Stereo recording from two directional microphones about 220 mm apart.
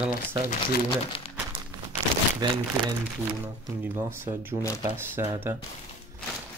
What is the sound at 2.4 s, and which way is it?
Speech, 20° right (ahead or behind).